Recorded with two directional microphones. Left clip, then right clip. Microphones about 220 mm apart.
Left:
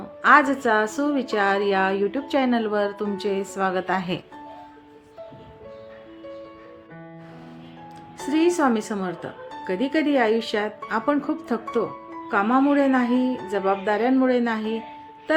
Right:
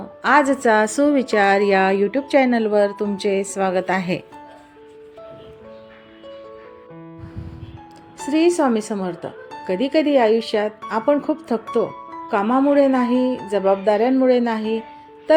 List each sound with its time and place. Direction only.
0.2 s a woman's voice: 15° right (ahead or behind)
8.2 s speech: 10° right (ahead or behind)